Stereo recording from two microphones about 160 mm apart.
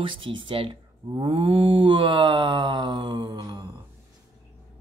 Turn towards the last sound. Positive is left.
turn(degrees=-25)  # may be behind; listen again after turning